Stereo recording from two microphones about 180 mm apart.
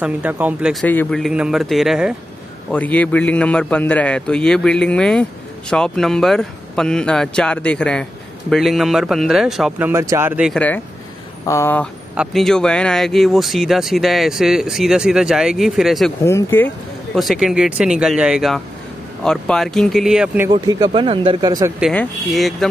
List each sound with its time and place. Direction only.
0.0 s speech: 10° right (ahead or behind)
0.8 s speech: 5° left (ahead or behind)
2.7 s a man's voice: 10° left (ahead or behind); by 10.5 s 10° right (ahead or behind)
10.5 s a man's voice: 10° left (ahead or behind)
16.3 s speech: 15° left (ahead or behind); by 20.4 s 5° right (ahead or behind)
20.5 s speech: 25° right (ahead or behind)
21.9 s speech: centre (ahead or behind)